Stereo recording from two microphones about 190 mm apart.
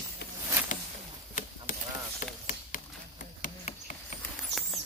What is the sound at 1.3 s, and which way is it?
Chop, 40° left (ahead or behind).